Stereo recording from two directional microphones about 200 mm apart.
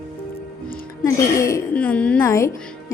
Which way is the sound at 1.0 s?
15° left (ahead or behind).